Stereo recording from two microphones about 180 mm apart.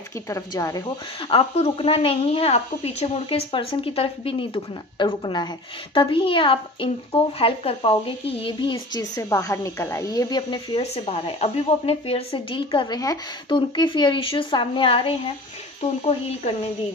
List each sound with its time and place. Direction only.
0.3 s speech: 20° left (ahead or behind)
1.3 s a woman's voice: 30° left (ahead or behind)